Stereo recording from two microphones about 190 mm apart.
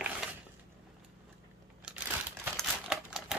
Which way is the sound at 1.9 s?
5° right (ahead or behind).